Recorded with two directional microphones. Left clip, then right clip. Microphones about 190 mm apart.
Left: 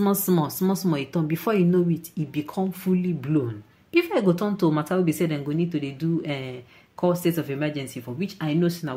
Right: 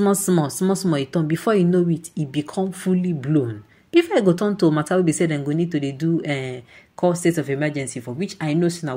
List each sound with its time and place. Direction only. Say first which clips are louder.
0.0 s speech: right 4 dB; 20° right (ahead or behind)